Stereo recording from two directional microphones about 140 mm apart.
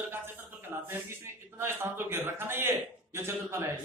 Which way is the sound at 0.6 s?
15° right (ahead or behind).